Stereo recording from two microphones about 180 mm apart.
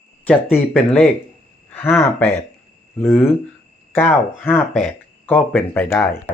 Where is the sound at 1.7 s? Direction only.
10° left (ahead or behind).